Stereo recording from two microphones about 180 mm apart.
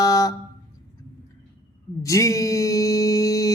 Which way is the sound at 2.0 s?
15° left (ahead or behind).